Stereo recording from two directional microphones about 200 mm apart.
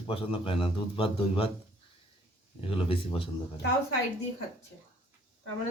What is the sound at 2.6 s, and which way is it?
Speech, 25° left (ahead or behind).